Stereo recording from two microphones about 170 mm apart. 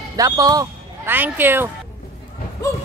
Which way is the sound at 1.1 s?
10° right (ahead or behind).